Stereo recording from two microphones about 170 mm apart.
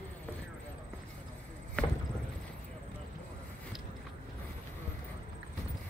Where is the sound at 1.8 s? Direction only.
5° left (ahead or behind).